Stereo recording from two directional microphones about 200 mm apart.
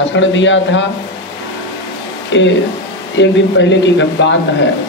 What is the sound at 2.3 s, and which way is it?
Speech, 65° left (ahead or behind).